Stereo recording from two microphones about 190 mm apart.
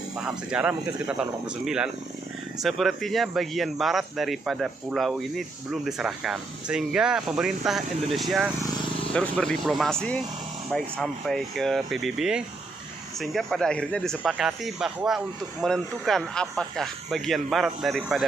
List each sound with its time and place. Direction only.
0.2 s speech: 5° right (ahead or behind)